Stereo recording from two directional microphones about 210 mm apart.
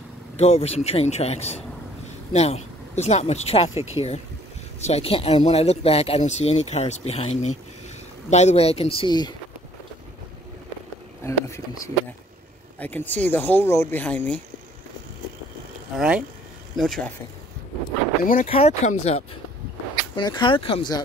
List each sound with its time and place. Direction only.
0.4 s speech: 30° left (ahead or behind)
4.7 s speech: 30° left (ahead or behind)
11.2 s speech: 15° left (ahead or behind)
16.0 s speech: 5° right (ahead or behind)
18.2 s speech: 40° left (ahead or behind)
18.5 s speech: 30° left (ahead or behind)